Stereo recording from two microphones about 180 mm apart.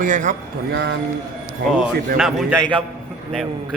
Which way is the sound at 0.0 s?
45° right (ahead or behind).